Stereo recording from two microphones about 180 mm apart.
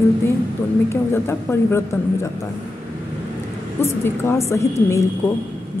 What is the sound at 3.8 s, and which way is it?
A woman's voice, 15° left (ahead or behind).